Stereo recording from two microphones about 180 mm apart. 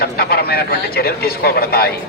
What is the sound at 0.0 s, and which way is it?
Speech, 55° left (ahead or behind).